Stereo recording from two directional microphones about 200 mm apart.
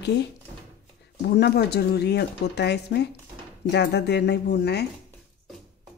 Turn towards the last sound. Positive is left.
turn(degrees=55)  # may be behind; listen again after turning